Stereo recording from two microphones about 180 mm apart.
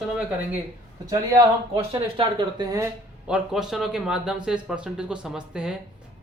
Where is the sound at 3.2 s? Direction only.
5° right (ahead or behind).